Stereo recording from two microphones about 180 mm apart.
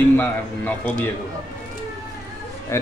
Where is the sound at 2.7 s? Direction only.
15° left (ahead or behind).